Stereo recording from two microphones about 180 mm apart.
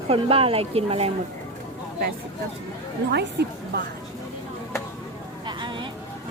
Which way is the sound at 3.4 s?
65° right (ahead or behind).